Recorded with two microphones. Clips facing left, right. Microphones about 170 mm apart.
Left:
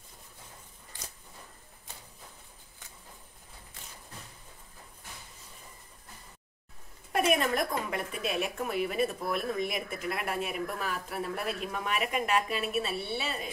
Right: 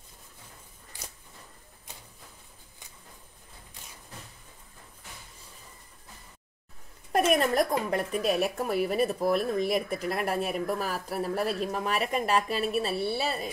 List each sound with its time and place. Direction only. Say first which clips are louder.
7.1 s speech: right 3 dB; 40° right (ahead or behind)